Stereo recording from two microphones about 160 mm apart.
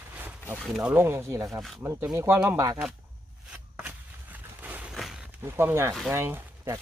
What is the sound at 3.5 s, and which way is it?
Walk, 5° right (ahead or behind).